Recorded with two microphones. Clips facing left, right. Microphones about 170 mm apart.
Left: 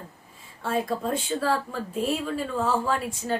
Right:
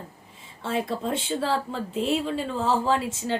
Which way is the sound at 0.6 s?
25° right (ahead or behind).